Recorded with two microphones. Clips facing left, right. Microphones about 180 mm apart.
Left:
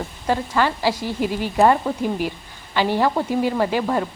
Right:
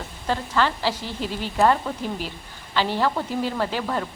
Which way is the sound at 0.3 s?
10° left (ahead or behind).